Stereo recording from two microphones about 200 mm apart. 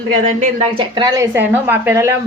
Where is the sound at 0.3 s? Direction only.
35° right (ahead or behind).